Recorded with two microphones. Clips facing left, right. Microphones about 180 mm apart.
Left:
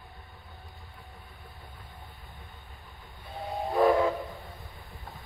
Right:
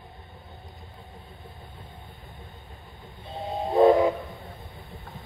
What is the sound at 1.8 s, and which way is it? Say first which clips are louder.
Vehicle: right 3 dB; 45° right (ahead or behind).